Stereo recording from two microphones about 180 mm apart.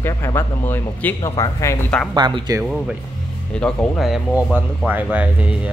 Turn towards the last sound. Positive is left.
turn(degrees=-10)  # may be behind; listen again after turning